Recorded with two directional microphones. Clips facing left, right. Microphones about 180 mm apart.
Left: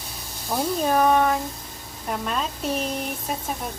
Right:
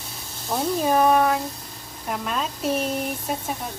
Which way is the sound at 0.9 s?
5° right (ahead or behind).